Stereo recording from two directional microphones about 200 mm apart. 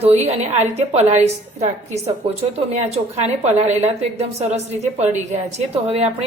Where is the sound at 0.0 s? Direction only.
35° right (ahead or behind).